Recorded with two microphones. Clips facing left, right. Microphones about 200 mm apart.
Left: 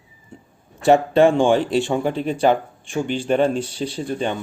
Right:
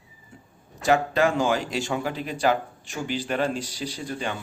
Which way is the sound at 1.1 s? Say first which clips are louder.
Left 8 dB; 30° left (ahead or behind).